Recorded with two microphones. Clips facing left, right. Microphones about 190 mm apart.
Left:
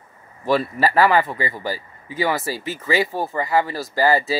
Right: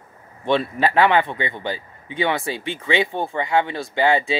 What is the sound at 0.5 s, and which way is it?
Speech, centre (ahead or behind).